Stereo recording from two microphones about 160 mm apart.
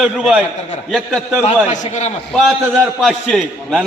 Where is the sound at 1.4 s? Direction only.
45° left (ahead or behind).